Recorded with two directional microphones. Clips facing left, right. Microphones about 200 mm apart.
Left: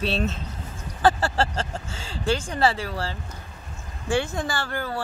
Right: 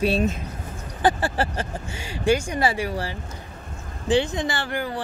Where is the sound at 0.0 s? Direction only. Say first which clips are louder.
Right 4 dB; 10° right (ahead or behind).